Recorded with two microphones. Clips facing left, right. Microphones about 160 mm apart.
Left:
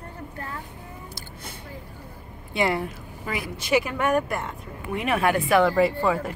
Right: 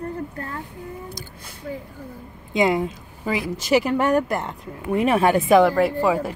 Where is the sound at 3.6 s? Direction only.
40° right (ahead or behind).